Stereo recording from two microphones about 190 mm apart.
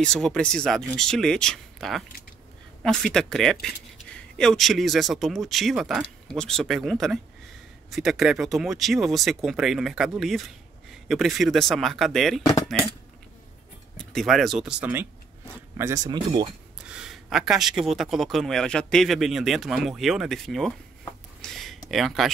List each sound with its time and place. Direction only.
0.0 s speech: 5° left (ahead or behind)
13.9 s speech: centre (ahead or behind); by 16.4 s 20° right (ahead or behind)
16.8 s speech: 5° right (ahead or behind)
21.4 s a sound: centre (ahead or behind)